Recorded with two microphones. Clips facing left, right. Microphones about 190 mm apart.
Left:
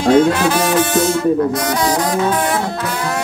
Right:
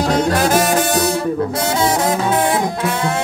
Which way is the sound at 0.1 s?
45° right (ahead or behind).